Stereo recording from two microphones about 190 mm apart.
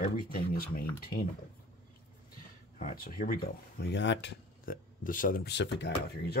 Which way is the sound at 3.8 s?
65° left (ahead or behind).